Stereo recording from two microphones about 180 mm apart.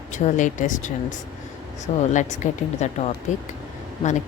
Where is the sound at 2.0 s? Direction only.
40° left (ahead or behind).